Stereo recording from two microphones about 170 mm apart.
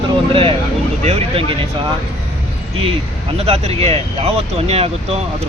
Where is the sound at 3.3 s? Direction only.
35° right (ahead or behind).